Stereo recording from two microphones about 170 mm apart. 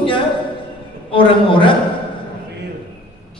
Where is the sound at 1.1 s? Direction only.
30° left (ahead or behind).